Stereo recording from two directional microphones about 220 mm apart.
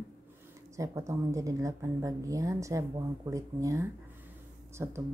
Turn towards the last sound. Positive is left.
turn(degrees=-10)  # may be behind; listen again after turning